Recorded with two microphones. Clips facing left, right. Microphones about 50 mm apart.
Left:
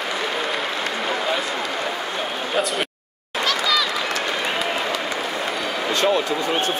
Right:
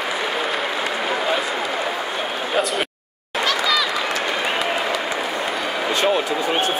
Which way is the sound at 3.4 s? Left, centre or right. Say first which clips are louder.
Right 1 dB; centre.